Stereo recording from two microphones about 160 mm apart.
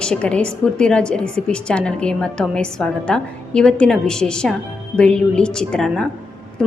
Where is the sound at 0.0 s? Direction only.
5° left (ahead or behind).